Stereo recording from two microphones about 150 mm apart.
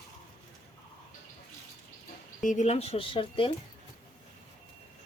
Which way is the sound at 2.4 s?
50° left (ahead or behind).